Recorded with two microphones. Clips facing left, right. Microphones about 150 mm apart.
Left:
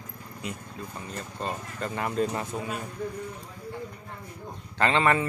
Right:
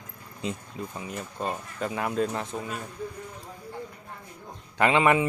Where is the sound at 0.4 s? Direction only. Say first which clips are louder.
Right 4 dB; 25° right (ahead or behind).